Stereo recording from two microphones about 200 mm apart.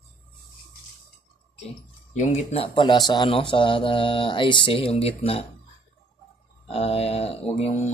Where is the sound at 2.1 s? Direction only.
30° left (ahead or behind).